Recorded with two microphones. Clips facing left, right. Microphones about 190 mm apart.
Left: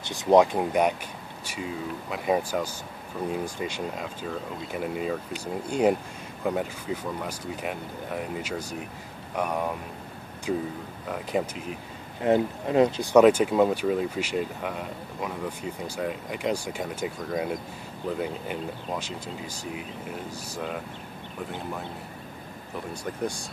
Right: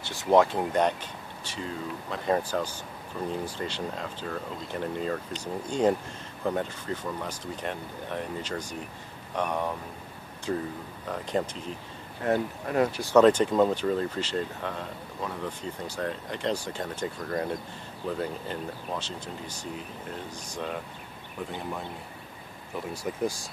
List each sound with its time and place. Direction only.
0.0 s speech: 15° left (ahead or behind)
12.2 s speech: 20° left (ahead or behind)
23.0 s speech: centre (ahead or behind)